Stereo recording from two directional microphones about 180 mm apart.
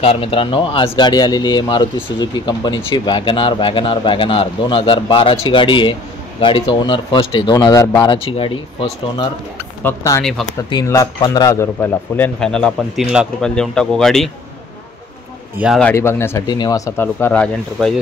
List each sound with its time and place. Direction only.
0.0 s speech: 30° left (ahead or behind)
9.8 s speech: 15° left (ahead or behind)
15.5 s speech: 5° right (ahead or behind)
15.8 s speech: 15° left (ahead or behind)